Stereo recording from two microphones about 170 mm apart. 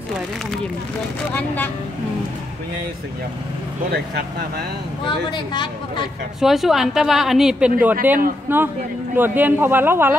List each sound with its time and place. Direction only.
1.3 s speech: 10° left (ahead or behind)
3.9 s speech: 70° right (ahead or behind)
5.3 s speech: 25° left (ahead or behind)
6.4 s a woman's voice: centre (ahead or behind)